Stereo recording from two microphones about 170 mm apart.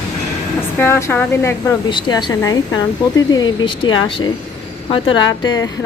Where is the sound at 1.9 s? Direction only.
25° left (ahead or behind).